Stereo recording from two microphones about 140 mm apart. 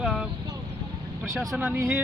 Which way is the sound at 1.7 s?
15° right (ahead or behind).